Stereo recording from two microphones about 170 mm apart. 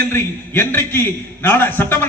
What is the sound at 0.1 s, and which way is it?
A man's voice, 15° left (ahead or behind).